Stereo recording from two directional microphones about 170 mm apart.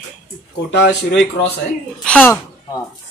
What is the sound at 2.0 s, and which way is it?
Speech, 5° left (ahead or behind).